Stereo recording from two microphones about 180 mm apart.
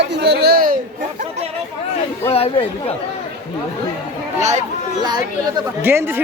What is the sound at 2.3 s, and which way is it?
Speech, 35° left (ahead or behind).